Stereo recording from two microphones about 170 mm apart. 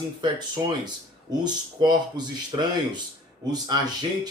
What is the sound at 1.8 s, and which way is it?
Speech, 25° right (ahead or behind).